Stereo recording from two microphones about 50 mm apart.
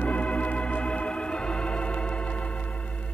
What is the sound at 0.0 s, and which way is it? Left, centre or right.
Organ, left.